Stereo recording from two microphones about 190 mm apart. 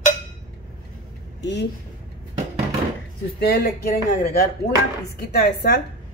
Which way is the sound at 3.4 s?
60° left (ahead or behind).